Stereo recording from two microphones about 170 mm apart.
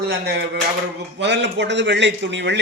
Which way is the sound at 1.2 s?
90° right.